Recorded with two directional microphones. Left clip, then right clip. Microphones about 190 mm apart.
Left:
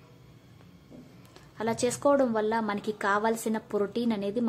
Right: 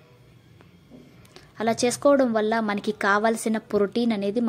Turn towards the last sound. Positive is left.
turn(degrees=-15)  # may be behind; listen again after turning